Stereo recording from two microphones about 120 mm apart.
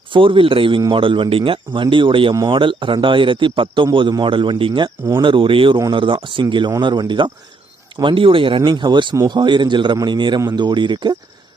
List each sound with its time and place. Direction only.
0.1 s a man's voice: 45° right (ahead or behind)